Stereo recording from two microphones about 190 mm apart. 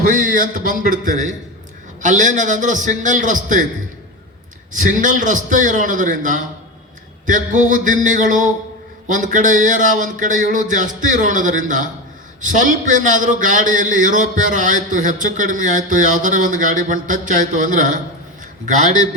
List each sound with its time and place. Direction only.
0.0 s a man's voice: 45° right (ahead or behind)
4.7 s a man's voice: 45° right (ahead or behind)